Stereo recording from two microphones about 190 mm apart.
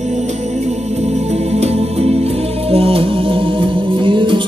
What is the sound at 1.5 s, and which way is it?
Music, 35° right (ahead or behind).